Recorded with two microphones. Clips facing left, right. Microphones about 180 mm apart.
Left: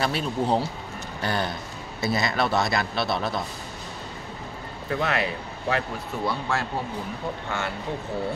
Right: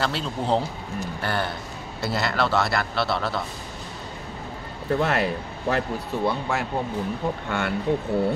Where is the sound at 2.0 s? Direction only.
75° right (ahead or behind).